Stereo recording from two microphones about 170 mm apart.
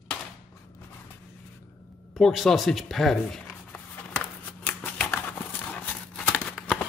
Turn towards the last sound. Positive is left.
turn(degrees=5)  # may be behind; listen again after turning